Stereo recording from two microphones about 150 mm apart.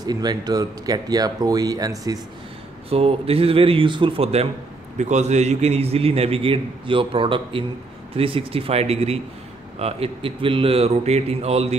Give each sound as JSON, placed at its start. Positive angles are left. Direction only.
{"t": 0.0, "sound": "speech", "side_deg": -25}
{"t": 2.9, "sound": "a man's voice", "side_deg": -40}